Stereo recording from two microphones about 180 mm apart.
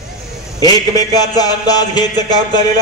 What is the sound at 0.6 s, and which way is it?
Speech, 20° left (ahead or behind).